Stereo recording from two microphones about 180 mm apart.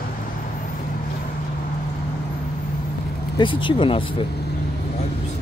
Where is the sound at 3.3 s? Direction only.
25° left (ahead or behind).